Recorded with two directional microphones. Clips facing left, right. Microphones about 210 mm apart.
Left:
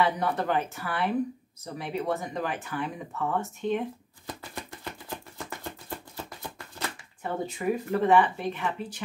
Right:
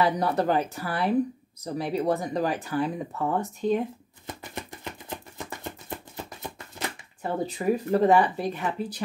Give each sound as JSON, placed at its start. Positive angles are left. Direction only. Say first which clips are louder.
{"t": 0.0, "sound": "speech", "louder": "right 3 dB", "side_deg": -35}
{"t": 4.3, "sound": "music", "louder": "right 2 dB", "side_deg": -20}
{"t": 5.6, "sound": "a sound", "louder": "right 1 dB", "side_deg": -20}
{"t": 7.2, "sound": "speech", "louder": "right 3 dB", "side_deg": -35}